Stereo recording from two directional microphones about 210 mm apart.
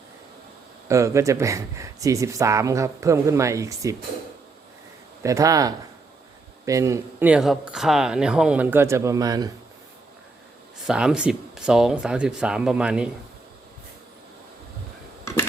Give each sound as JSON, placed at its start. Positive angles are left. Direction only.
{"t": 0.9, "sound": "speech", "side_deg": -15}
{"t": 5.2, "sound": "speech", "side_deg": -15}
{"t": 10.8, "sound": "speech", "side_deg": -5}